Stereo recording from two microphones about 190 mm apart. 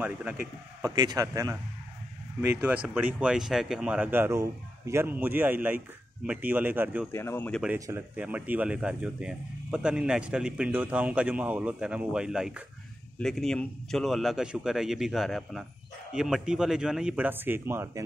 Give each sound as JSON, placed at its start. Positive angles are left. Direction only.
{"t": 0.0, "sound": "speech", "side_deg": -10}
{"t": 7.1, "sound": "speech", "side_deg": 15}
{"t": 7.6, "sound": "speech", "side_deg": -10}